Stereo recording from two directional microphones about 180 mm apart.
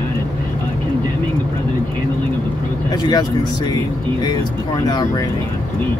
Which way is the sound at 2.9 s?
25° left (ahead or behind).